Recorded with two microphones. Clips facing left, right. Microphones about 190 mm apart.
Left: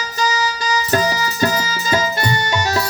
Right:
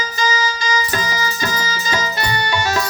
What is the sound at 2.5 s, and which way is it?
Music, 40° left (ahead or behind).